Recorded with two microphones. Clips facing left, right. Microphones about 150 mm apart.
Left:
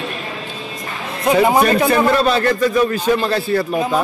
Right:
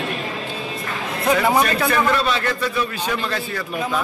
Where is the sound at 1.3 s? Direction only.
25° left (ahead or behind).